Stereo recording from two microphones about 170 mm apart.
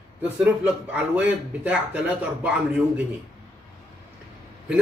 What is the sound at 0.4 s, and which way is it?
Speech, 10° right (ahead or behind).